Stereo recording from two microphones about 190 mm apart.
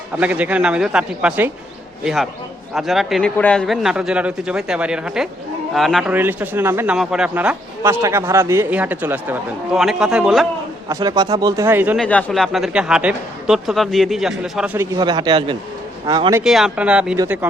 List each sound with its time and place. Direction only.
0.2 s speech: 10° right (ahead or behind)
2.7 s a man's voice: centre (ahead or behind)
7.8 s speech: 15° right (ahead or behind)
10.8 s a man's voice: 20° right (ahead or behind)
11.9 s a man's voice: 5° left (ahead or behind)
14.9 s a man's voice: 20° right (ahead or behind)
16.4 s a man's voice: 5° right (ahead or behind)